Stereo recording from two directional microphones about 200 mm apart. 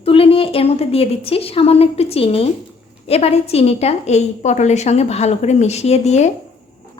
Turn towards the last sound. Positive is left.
turn(degrees=35)  # may be behind; listen again after turning